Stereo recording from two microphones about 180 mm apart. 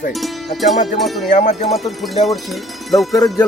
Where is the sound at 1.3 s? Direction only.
40° left (ahead or behind).